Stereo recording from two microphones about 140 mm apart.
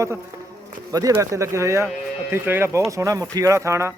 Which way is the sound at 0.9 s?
25° right (ahead or behind).